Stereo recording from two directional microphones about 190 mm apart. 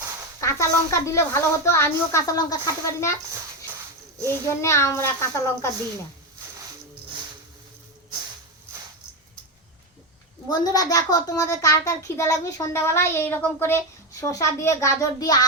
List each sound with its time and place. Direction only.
0.3 s a child's voice: 15° left (ahead or behind)
4.3 s a child's voice: 15° left (ahead or behind)
10.5 s a child's voice: 20° left (ahead or behind)